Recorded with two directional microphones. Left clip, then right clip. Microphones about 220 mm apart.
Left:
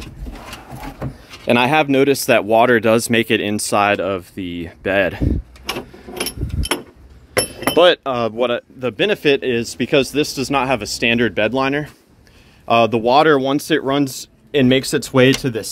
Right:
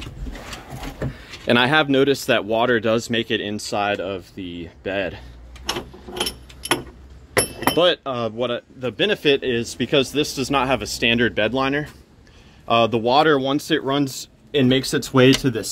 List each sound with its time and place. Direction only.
1.5 s speech: 15° left (ahead or behind); by 5.2 s 35° left (ahead or behind)
7.4 s speech: 40° left (ahead or behind); by 15.7 s 15° left (ahead or behind)